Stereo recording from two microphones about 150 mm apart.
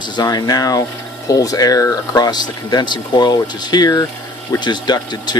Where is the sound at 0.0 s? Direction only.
25° left (ahead or behind).